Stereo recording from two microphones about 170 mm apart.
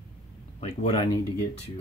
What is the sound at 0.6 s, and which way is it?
Speech, 35° left (ahead or behind).